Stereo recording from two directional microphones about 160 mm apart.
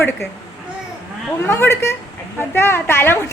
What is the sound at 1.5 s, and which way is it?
A woman's voice, 15° left (ahead or behind).